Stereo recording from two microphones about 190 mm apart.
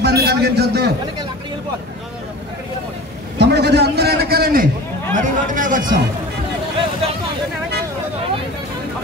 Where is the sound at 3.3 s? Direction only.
60° right (ahead or behind).